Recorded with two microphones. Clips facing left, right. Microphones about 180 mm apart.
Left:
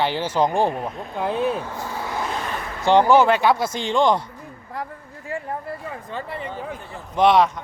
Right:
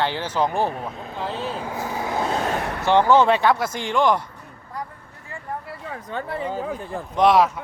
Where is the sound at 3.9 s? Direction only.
25° left (ahead or behind).